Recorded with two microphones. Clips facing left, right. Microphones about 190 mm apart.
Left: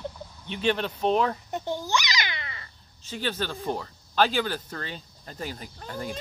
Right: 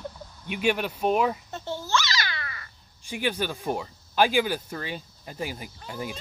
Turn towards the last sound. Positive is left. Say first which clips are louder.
# even
turn(degrees=-10)  # may be behind; listen again after turning